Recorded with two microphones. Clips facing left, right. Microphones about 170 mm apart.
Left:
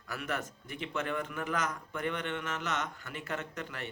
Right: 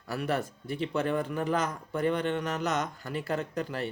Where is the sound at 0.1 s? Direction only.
35° right (ahead or behind).